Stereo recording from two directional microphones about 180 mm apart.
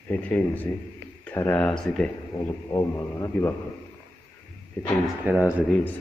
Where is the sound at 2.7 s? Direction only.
20° left (ahead or behind).